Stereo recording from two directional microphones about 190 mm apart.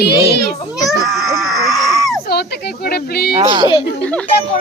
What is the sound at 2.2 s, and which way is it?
A child's voice, 55° left (ahead or behind).